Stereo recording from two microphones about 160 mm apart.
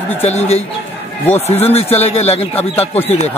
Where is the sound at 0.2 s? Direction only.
40° left (ahead or behind).